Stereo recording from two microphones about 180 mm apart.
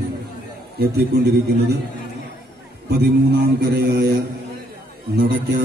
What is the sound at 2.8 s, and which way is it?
A man's voice, 65° right (ahead or behind).